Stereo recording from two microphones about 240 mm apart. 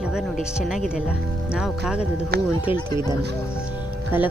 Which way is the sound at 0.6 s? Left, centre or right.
Centre.